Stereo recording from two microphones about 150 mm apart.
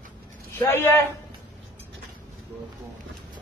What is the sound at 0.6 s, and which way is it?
Speech, 15° left (ahead or behind).